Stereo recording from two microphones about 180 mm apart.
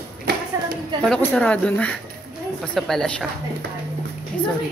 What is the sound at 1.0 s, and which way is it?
Speech, 5° left (ahead or behind).